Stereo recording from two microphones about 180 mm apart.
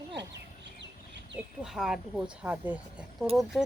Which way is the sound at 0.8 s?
75° right (ahead or behind).